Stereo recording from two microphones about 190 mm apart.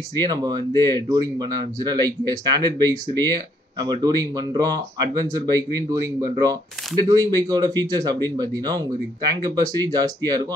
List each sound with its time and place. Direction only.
0.2 s a man's voice: 20° right (ahead or behind)
9.4 s a man's voice: 20° right (ahead or behind)